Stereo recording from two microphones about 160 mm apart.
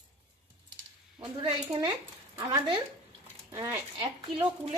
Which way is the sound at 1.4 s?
30° right (ahead or behind).